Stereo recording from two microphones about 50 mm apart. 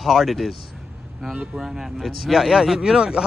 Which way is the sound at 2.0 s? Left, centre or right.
Centre.